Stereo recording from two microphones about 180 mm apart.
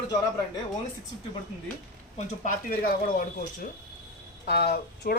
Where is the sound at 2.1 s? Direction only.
45° left (ahead or behind).